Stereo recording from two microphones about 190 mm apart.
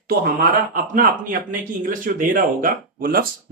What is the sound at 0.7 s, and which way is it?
A man's voice, 45° right (ahead or behind).